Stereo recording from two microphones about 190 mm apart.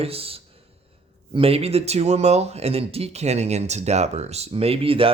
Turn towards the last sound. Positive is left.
turn(degrees=-30)  # may be behind; listen again after turning